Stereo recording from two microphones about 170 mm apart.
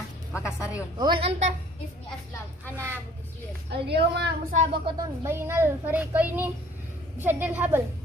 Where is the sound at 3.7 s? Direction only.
80° right.